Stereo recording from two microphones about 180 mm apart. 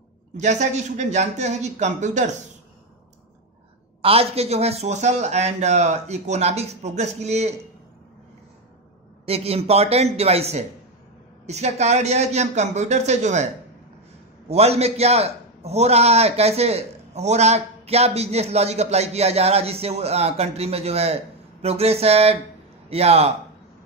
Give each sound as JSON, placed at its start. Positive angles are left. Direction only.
{"t": 0.4, "sound": "a man's voice", "side_deg": -40}
{"t": 4.0, "sound": "a man's voice", "side_deg": -35}
{"t": 9.2, "sound": "a man's voice", "side_deg": -35}
{"t": 14.5, "sound": "a man's voice", "side_deg": -35}